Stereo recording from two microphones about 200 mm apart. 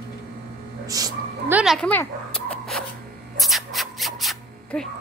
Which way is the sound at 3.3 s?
Centre (ahead or behind).